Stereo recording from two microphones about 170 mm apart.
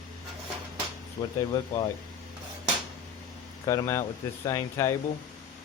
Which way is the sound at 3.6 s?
20° left (ahead or behind).